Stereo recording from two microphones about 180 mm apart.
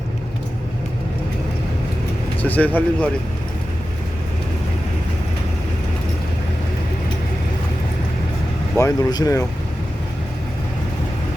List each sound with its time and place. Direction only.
2.4 s speech: 10° left (ahead or behind)
8.8 s speech: 20° left (ahead or behind)